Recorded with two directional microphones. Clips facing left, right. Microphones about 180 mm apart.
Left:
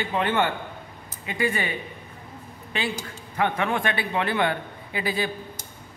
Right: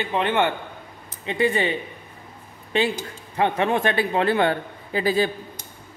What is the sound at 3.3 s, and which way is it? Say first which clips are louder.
A man's voice: right 3 dB; 25° right (ahead or behind).